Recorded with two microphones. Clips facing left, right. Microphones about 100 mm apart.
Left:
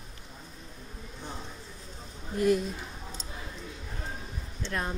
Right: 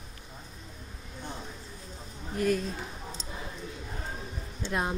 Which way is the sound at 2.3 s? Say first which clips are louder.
Left 2 dB; 20° left (ahead or behind).